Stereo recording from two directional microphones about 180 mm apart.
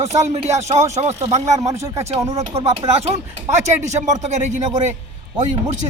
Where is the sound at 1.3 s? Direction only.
40° right (ahead or behind).